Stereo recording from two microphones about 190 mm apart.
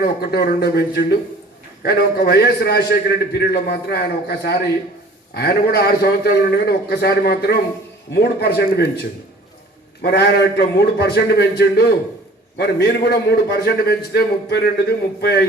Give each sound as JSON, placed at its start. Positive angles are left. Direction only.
{"t": 0.0, "sound": "a man's voice", "side_deg": 55}
{"t": 10.0, "sound": "a man's voice", "side_deg": 60}